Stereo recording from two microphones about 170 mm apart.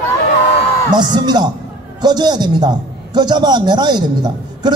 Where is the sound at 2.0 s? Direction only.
25° right (ahead or behind).